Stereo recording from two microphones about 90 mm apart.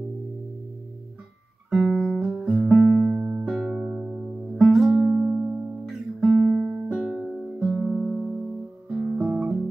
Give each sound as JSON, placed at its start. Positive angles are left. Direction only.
{"t": 1.7, "sound": "music", "side_deg": 0}
{"t": 3.2, "sound": "music", "side_deg": -20}
{"t": 3.4, "sound": "music", "side_deg": -5}